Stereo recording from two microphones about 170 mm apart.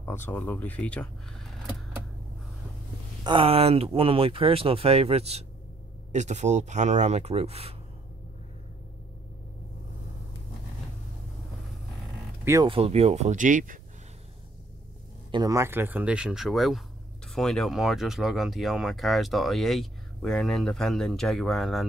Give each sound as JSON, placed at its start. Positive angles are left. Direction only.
{"t": 0.0, "sound": "speech", "side_deg": 15}
{"t": 3.3, "sound": "speech", "side_deg": -35}
{"t": 12.6, "sound": "speech", "side_deg": -35}
{"t": 15.3, "sound": "speech", "side_deg": -20}